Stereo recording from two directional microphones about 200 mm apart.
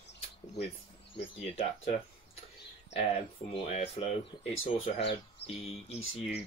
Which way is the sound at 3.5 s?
30° left (ahead or behind).